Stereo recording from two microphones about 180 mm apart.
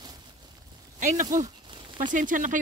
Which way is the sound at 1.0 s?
45° right (ahead or behind).